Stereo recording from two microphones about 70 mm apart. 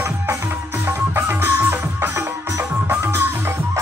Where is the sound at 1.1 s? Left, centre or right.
Right.